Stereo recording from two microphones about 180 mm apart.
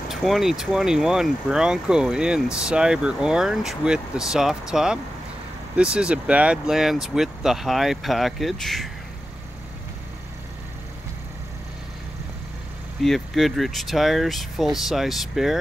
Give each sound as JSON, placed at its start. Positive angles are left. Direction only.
{"t": 0.1, "sound": "speech", "side_deg": 0}
{"t": 13.0, "sound": "speech", "side_deg": 0}